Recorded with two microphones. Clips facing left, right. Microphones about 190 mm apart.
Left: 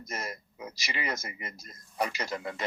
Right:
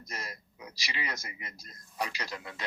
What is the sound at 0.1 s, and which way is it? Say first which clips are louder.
A man's voice: left 5 dB; 50° left (ahead or behind).